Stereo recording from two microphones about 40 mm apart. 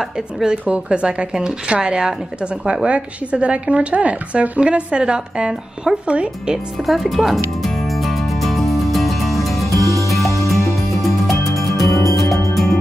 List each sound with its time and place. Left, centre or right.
0.5 s speech: right
6.9 s music: centre